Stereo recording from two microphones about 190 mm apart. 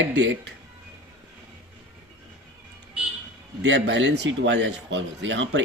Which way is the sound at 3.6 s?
70° right (ahead or behind).